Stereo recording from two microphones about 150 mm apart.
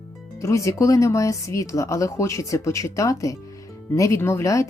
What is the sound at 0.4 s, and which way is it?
A woman's voice, 20° left (ahead or behind).